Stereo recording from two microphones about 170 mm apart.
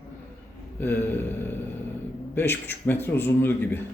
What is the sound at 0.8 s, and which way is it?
A man's voice, 10° left (ahead or behind).